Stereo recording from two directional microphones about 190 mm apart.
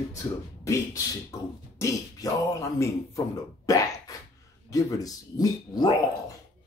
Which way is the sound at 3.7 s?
15° left (ahead or behind).